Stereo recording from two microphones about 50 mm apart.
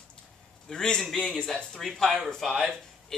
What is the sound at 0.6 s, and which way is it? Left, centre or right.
Speech, centre.